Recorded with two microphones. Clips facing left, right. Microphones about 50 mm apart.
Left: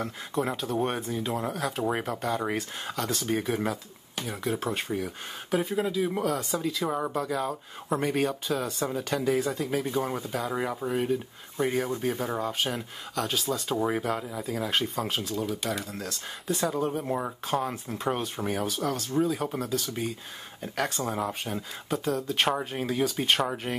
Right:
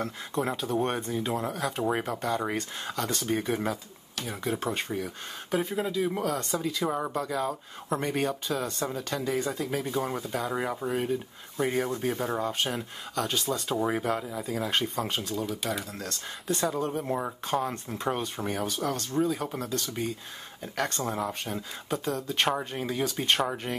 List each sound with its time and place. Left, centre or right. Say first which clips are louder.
0.0 s speech: even; centre